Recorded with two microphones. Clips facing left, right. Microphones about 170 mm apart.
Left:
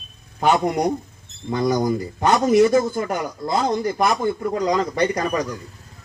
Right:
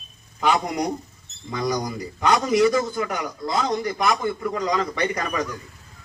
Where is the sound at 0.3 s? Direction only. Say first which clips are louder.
Left 4 dB; 50° left (ahead or behind).